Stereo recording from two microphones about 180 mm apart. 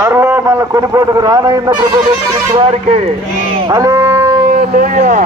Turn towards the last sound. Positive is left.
turn(degrees=-45)  # may be behind; listen again after turning